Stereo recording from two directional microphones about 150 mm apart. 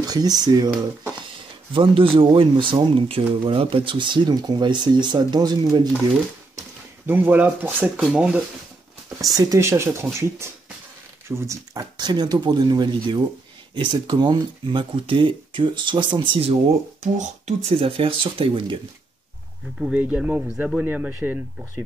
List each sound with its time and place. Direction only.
0.0 s speech: 25° right (ahead or behind)
1.7 s speech: 35° right (ahead or behind)
7.1 s speech: 10° right (ahead or behind)
9.2 s speech: 25° right (ahead or behind)
17.0 s speech: 50° right (ahead or behind)
17.6 s speech: 40° right (ahead or behind)
19.8 s speech: 10° right (ahead or behind)